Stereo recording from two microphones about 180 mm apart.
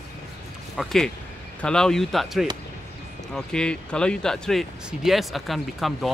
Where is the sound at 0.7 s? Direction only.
Centre (ahead or behind).